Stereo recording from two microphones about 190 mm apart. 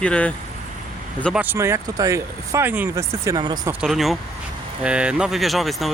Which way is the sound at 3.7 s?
5° right (ahead or behind).